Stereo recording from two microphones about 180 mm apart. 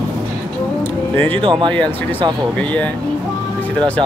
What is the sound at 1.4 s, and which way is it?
Speech, 25° right (ahead or behind).